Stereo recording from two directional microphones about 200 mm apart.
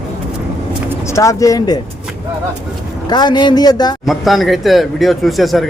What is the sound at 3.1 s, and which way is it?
Speech, 20° left (ahead or behind).